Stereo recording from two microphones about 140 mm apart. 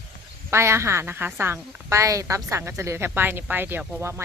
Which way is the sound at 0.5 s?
20° right (ahead or behind).